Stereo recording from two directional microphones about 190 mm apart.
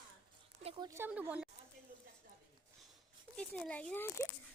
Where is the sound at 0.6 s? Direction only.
30° right (ahead or behind).